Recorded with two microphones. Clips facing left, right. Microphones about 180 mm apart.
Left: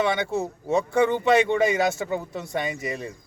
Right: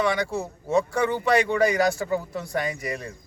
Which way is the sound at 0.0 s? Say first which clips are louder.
Left 1 dB; 20° left (ahead or behind).